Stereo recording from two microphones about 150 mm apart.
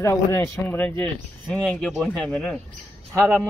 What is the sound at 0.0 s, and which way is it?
Speech, 15° left (ahead or behind).